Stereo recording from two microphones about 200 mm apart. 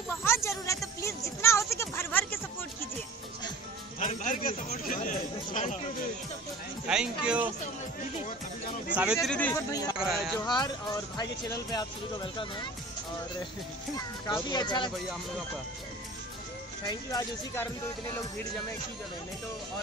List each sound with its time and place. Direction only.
0.2 s a sound: 15° left (ahead or behind)
4.0 s a sound: 40° left (ahead or behind)
6.9 s speech: 5° right (ahead or behind)
8.9 s speech: 5° right (ahead or behind)
10.4 s speech: 20° left (ahead or behind)
13.9 s speech: 20° left (ahead or behind)
16.8 s speech: 20° left (ahead or behind)